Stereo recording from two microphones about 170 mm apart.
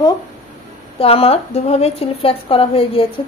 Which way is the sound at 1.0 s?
35° left (ahead or behind).